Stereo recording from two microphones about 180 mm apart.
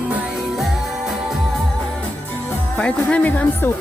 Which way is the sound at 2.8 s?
5° left (ahead or behind).